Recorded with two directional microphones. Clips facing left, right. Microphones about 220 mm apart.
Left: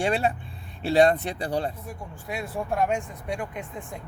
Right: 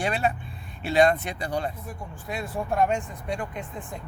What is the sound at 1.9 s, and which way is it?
Speech, 10° left (ahead or behind).